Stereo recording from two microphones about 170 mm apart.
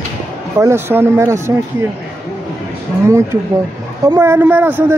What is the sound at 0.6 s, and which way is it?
Speech, 15° right (ahead or behind).